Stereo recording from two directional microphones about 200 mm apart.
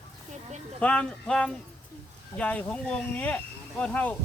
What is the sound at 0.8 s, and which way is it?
Speech, 5° left (ahead or behind).